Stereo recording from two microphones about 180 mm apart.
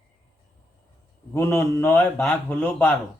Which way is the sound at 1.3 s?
15° left (ahead or behind).